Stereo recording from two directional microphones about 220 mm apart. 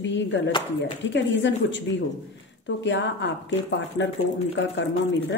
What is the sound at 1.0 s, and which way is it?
A woman's voice, 55° left (ahead or behind).